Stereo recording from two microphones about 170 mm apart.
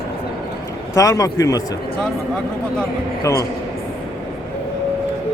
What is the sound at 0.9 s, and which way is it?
Speech, 20° left (ahead or behind).